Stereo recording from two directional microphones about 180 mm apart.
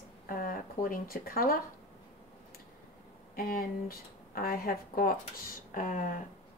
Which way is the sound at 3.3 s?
55° left (ahead or behind).